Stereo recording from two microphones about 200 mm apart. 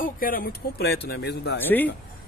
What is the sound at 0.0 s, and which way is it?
Speech, 45° left (ahead or behind).